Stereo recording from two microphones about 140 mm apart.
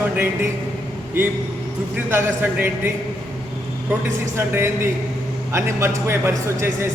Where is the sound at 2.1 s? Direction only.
15° right (ahead or behind).